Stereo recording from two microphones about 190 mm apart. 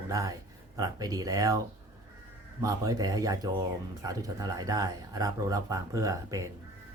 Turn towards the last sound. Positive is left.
turn(degrees=-15)  # may be behind; listen again after turning